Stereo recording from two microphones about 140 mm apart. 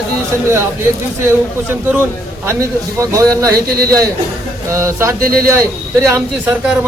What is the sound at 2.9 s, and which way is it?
Speech, 25° right (ahead or behind).